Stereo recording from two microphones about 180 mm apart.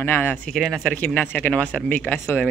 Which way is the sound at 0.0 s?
10° left (ahead or behind).